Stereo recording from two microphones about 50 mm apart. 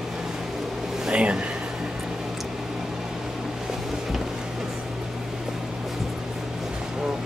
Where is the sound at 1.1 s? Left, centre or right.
Right.